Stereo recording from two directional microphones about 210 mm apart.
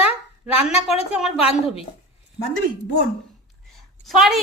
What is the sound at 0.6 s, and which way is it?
Speech, 30° left (ahead or behind).